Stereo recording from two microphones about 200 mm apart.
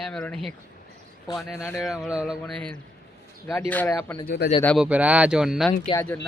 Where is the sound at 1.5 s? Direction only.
10° left (ahead or behind).